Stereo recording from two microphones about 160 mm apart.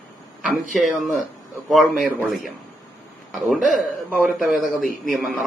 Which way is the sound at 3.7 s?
Centre (ahead or behind).